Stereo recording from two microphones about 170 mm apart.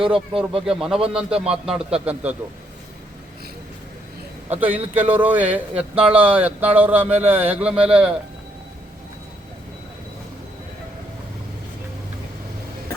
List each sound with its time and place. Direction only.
0.0 s speech: 30° right (ahead or behind)
0.6 s a man's voice: 5° right (ahead or behind)
4.4 s a man's voice: 10° right (ahead or behind)